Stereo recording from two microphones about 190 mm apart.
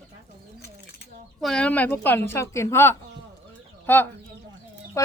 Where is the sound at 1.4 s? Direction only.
5° left (ahead or behind).